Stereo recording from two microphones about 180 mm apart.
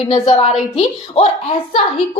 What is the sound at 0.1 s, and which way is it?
A woman's voice, 25° left (ahead or behind).